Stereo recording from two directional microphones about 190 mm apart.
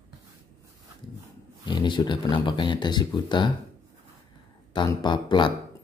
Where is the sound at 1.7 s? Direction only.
25° left (ahead or behind).